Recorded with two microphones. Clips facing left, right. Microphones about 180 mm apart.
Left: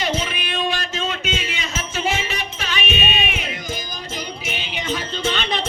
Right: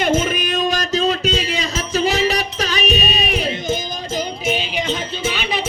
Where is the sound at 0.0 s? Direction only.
50° right (ahead or behind).